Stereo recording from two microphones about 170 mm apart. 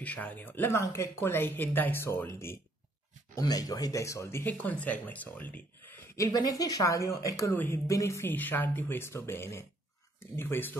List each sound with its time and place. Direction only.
0.0 s speech: 10° left (ahead or behind)
6.3 s speech: 20° left (ahead or behind)